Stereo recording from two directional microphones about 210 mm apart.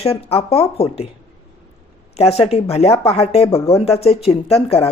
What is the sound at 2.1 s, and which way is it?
Speech, 30° left (ahead or behind).